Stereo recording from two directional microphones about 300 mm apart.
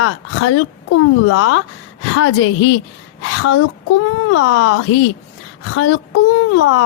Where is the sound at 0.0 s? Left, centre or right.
Left.